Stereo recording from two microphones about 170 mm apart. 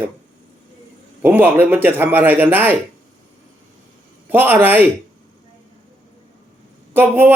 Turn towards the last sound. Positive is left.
turn(degrees=-10)  # may be behind; listen again after turning